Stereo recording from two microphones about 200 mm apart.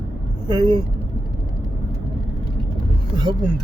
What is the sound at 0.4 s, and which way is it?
Speech, 20° right (ahead or behind).